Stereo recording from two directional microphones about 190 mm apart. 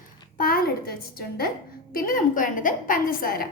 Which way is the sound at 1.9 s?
45° left (ahead or behind).